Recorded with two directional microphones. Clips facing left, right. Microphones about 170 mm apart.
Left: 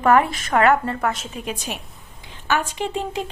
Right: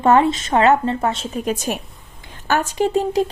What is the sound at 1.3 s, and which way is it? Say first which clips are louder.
A woman's voice: right 7 dB; 45° right (ahead or behind).